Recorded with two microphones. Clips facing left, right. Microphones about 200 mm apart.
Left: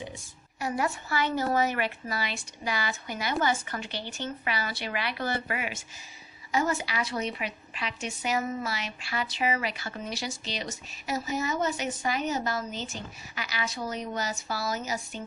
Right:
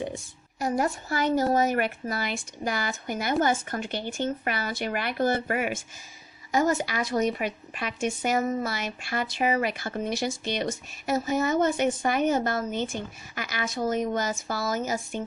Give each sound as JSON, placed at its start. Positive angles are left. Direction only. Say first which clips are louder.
{"t": 0.6, "sound": "speech", "louder": "right 4 dB", "side_deg": -45}